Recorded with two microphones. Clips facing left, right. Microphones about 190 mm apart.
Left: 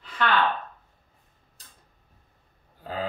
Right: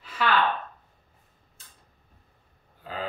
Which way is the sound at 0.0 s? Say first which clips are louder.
Even; 5° right (ahead or behind).